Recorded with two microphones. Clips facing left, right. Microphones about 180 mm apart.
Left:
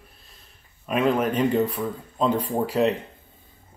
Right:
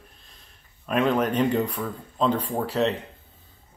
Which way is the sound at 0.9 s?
5° left (ahead or behind).